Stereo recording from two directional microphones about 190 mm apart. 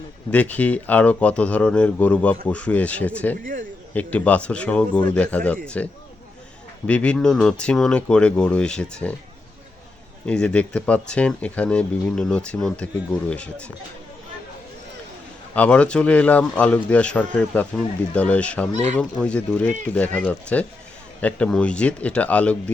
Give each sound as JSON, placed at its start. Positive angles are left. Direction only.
{"t": 0.3, "sound": "a man's voice", "side_deg": 5}
{"t": 3.4, "sound": "speech", "side_deg": -45}
{"t": 3.9, "sound": "a man's voice", "side_deg": 10}
{"t": 10.2, "sound": "speech", "side_deg": 5}
{"t": 15.5, "sound": "a man's voice", "side_deg": 5}